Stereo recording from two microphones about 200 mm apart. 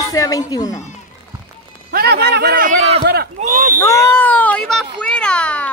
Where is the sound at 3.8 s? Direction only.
15° left (ahead or behind).